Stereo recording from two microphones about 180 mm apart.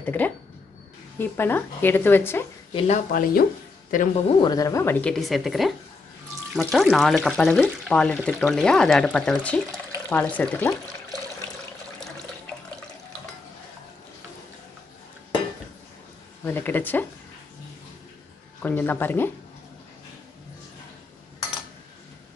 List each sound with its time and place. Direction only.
0.0 s speech: 10° left (ahead or behind)
2.7 s speech: 30° left (ahead or behind)
3.1 s speech: 50° left (ahead or behind)
4.4 s speech: 20° left (ahead or behind)
16.4 s speech: 10° left (ahead or behind)
18.6 s speech: 10° left (ahead or behind)